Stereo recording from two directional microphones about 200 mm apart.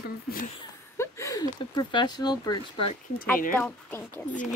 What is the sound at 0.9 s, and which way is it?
Speech, 15° left (ahead or behind).